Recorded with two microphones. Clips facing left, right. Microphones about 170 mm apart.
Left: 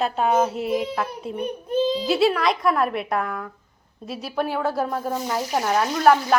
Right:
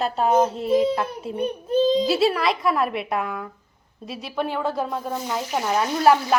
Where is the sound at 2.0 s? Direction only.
Centre (ahead or behind).